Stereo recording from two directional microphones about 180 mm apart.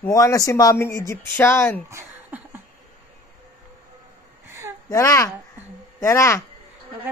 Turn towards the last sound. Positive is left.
turn(degrees=15)  # may be behind; listen again after turning